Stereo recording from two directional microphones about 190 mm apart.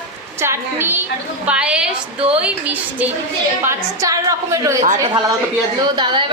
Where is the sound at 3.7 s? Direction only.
15° right (ahead or behind).